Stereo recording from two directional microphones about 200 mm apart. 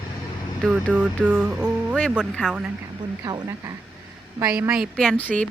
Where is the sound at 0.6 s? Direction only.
5° right (ahead or behind).